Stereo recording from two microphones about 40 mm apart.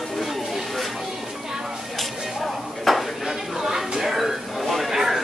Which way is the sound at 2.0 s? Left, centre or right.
Centre.